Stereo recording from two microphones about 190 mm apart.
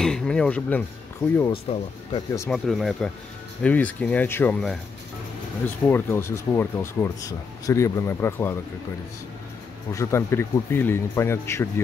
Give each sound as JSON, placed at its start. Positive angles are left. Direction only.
{"t": 0.0, "sound": "speech", "side_deg": 5}
{"t": 1.5, "sound": "speech", "side_deg": 30}
{"t": 2.5, "sound": "speech", "side_deg": 0}
{"t": 5.9, "sound": "speech", "side_deg": 10}
{"t": 9.9, "sound": "speech", "side_deg": 15}